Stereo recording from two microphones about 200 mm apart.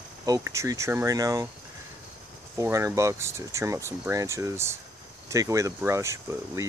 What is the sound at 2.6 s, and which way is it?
Speech, 15° right (ahead or behind).